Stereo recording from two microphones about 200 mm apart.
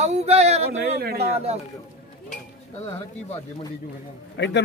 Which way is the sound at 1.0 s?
50° right (ahead or behind).